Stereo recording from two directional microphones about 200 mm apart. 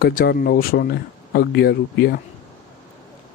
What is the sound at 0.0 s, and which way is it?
Speech, 50° left (ahead or behind).